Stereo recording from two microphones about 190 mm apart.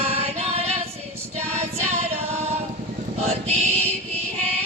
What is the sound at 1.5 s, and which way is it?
Child singing, 35° right (ahead or behind).